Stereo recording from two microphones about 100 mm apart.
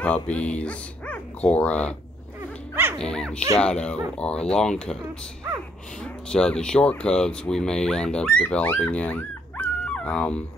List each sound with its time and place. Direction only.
0.0 s speech: 15° left (ahead or behind)
2.7 s dog: 20° right (ahead or behind)
3.0 s speech: 5° left (ahead or behind)
6.2 s speech: 10° left (ahead or behind)